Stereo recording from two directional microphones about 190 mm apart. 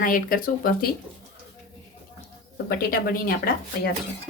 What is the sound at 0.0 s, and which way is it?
Speech, 45° left (ahead or behind).